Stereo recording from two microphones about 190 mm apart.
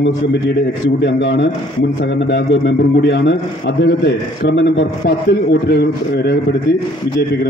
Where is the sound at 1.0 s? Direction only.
65° left (ahead or behind).